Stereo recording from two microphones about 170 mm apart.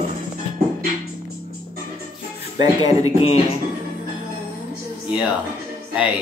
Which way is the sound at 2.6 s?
25° right (ahead or behind).